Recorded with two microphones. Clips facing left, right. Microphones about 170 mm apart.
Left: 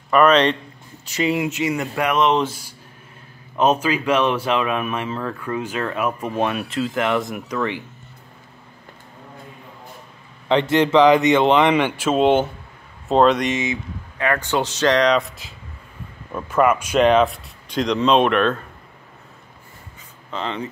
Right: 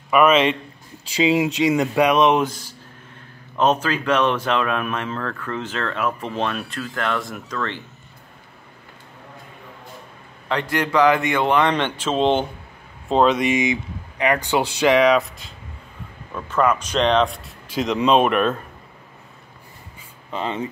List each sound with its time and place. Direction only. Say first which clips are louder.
0.1 s speech: left 1 dB; 5° right (ahead or behind)
1.3 s speech: right 5 dB; 20° right (ahead or behind)
2.4 s speech: right 1 dB; 10° left (ahead or behind)
10.5 s a man's voice: left 5 dB; 25° left (ahead or behind)
11.7 s speech: left 4 dB; 10° left (ahead or behind)
20.2 s speech: right 1 dB; 15° right (ahead or behind)